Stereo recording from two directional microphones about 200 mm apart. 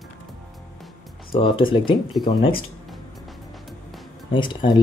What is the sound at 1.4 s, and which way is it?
Speech, 25° left (ahead or behind).